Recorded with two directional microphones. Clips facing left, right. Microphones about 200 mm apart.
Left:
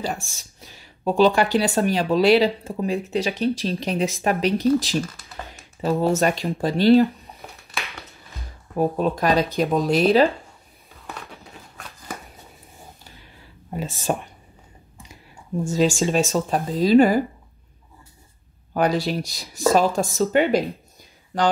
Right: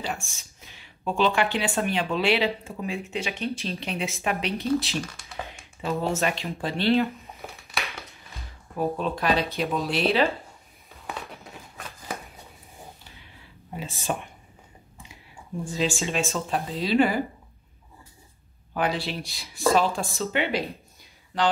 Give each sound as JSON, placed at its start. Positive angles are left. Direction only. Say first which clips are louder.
{"t": 0.0, "sound": "speech", "louder": "left 4 dB", "side_deg": 35}
{"t": 4.7, "sound": "speech", "louder": "left 5 dB", "side_deg": 0}
{"t": 5.8, "sound": "speech", "louder": "left 6 dB", "side_deg": 40}
{"t": 7.3, "sound": "a sound", "louder": "even", "side_deg": 0}
{"t": 8.7, "sound": "speech", "louder": "left 5 dB", "side_deg": 45}
{"t": 14.1, "sound": "speech", "louder": "left 5 dB", "side_deg": 40}
{"t": 15.6, "sound": "speech", "louder": "left 7 dB", "side_deg": 45}
{"t": 18.7, "sound": "speech", "louder": "left 6 dB", "side_deg": 40}